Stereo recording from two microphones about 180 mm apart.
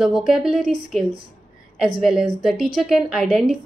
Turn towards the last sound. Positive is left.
turn(degrees=0)  # may be behind; listen again after turning